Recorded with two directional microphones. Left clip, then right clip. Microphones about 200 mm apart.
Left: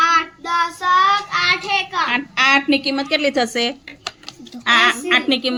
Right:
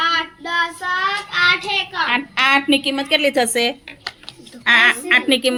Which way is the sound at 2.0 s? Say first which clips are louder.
Right 1 dB; centre (ahead or behind).